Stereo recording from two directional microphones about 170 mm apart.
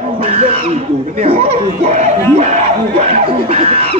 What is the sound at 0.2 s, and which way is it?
Speech, 35° right (ahead or behind).